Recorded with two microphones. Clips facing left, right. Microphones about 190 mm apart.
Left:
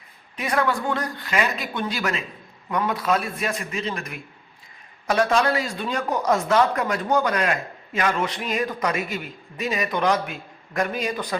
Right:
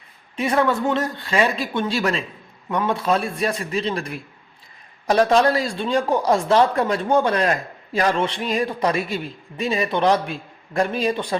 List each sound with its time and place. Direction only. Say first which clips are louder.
0.3 s speech: right 4 dB; 25° right (ahead or behind)